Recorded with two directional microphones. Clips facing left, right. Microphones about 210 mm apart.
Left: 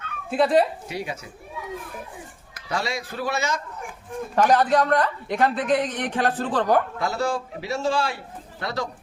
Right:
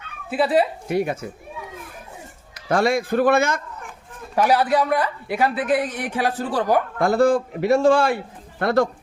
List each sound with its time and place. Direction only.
0.3 s speech: 5° right (ahead or behind)
0.9 s a man's voice: 50° right (ahead or behind)
2.6 s a man's voice: 55° right (ahead or behind)
4.4 s speech: 10° right (ahead or behind)
7.0 s a man's voice: 55° right (ahead or behind)